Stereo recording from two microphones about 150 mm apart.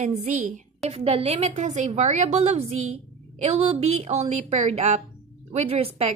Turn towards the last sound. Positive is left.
turn(degrees=-40)  # may be behind; listen again after turning